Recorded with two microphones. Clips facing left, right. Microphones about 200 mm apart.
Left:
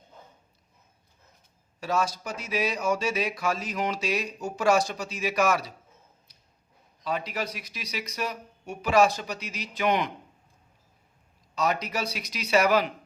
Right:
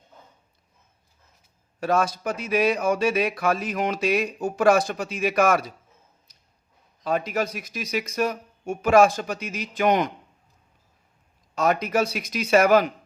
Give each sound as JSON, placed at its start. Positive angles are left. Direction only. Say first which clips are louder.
{"t": 1.8, "sound": "speech", "louder": "right 5 dB", "side_deg": -55}
{"t": 7.0, "sound": "speech", "louder": "right 6 dB", "side_deg": -50}
{"t": 11.5, "sound": "speech", "louder": "right 6 dB", "side_deg": -50}